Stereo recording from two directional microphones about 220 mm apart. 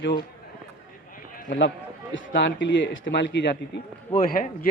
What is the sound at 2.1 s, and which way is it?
A man's voice, 55° left (ahead or behind).